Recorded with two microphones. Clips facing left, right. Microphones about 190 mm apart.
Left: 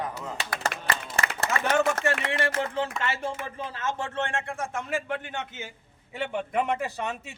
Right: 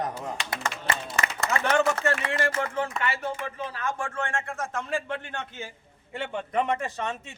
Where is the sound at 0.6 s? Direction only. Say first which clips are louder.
Left 1 dB; 35° left (ahead or behind).